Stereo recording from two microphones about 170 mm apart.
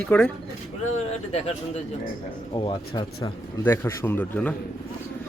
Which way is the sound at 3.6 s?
15° left (ahead or behind).